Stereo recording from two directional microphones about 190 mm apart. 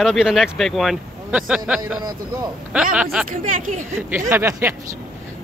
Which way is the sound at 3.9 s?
10° right (ahead or behind).